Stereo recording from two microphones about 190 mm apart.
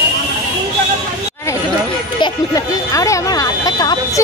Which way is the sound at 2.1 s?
20° left (ahead or behind).